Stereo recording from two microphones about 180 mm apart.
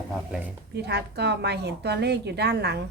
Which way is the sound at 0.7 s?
65° right (ahead or behind).